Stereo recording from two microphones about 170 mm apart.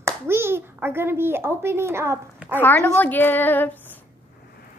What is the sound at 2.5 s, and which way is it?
A woman's voice, 10° left (ahead or behind).